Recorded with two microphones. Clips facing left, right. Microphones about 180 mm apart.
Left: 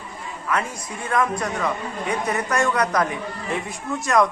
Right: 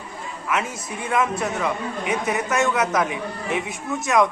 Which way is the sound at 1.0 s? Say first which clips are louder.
Even; 5° right (ahead or behind).